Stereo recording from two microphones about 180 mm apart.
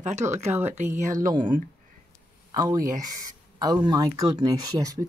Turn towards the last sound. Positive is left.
turn(degrees=-20)  # may be behind; listen again after turning